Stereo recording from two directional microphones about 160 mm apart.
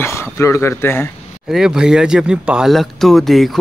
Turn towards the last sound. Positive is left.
turn(degrees=0)  # may be behind; listen again after turning